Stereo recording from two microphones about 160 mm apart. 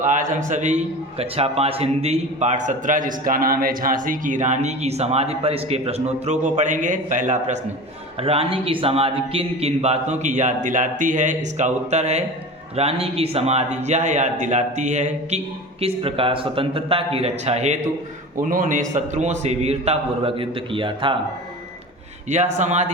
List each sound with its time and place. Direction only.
0.0 s a man's voice: 50° right (ahead or behind)
1.2 s a man's voice: 40° right (ahead or behind)
8.2 s a man's voice: 40° right (ahead or behind)
15.8 s a man's voice: 35° right (ahead or behind)
18.3 s a man's voice: 55° right (ahead or behind); by 21.2 s 30° right (ahead or behind)
22.3 s a man's voice: 50° right (ahead or behind)